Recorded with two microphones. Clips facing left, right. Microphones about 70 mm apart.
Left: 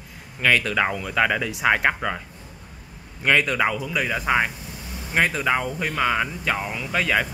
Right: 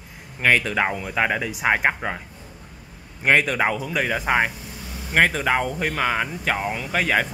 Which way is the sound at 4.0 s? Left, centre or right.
Right.